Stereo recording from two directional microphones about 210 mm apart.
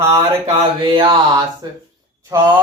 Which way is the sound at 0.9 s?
25° right (ahead or behind).